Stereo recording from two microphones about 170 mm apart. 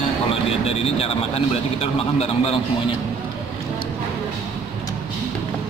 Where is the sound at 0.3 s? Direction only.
35° left (ahead or behind).